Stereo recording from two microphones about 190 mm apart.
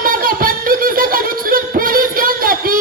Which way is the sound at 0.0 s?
50° right (ahead or behind).